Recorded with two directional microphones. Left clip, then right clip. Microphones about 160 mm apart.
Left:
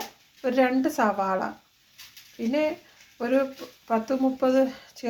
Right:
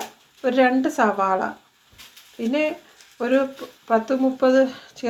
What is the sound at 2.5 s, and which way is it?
A woman's voice, 20° right (ahead or behind).